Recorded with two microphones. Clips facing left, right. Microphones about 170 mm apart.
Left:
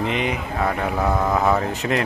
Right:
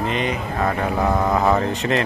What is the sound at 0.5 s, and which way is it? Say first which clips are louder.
Speech: right 2 dB; centre (ahead or behind).